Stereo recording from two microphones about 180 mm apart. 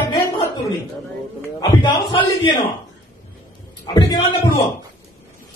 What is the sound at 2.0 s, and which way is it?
Speech, 25° left (ahead or behind).